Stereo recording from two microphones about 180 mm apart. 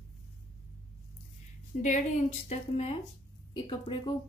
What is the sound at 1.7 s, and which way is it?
A woman's voice, 40° left (ahead or behind).